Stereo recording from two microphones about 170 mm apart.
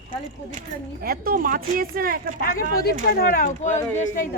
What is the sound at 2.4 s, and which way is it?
Speech, 60° left (ahead or behind).